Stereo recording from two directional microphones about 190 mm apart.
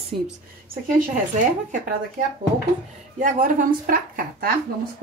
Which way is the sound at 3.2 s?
45° right (ahead or behind).